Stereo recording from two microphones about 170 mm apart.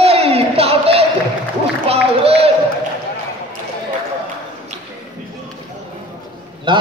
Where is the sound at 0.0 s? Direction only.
35° right (ahead or behind).